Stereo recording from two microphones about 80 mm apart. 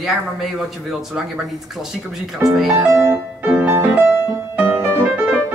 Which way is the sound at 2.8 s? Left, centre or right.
Right.